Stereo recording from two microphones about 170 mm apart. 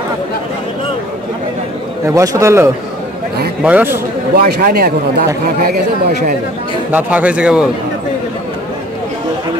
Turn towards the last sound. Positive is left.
turn(degrees=-5)  # may be behind; listen again after turning